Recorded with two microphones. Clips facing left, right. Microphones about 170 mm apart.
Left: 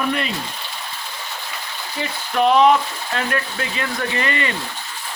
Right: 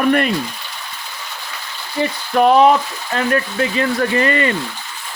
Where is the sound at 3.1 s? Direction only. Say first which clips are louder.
Right 6 dB; 35° right (ahead or behind).